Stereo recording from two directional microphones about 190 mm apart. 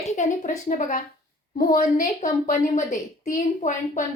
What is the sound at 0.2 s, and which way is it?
A woman's voice, 40° left (ahead or behind).